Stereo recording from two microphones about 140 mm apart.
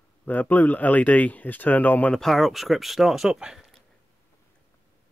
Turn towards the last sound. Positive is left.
turn(degrees=-5)  # may be behind; listen again after turning